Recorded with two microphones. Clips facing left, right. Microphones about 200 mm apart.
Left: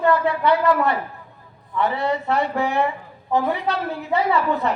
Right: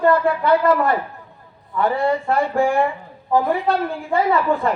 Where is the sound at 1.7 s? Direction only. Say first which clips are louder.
Right 3 dB; 45° right (ahead or behind).